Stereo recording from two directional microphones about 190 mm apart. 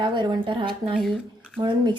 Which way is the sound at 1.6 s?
25° right (ahead or behind).